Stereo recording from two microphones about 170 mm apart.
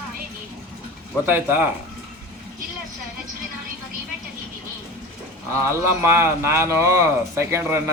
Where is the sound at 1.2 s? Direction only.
10° right (ahead or behind).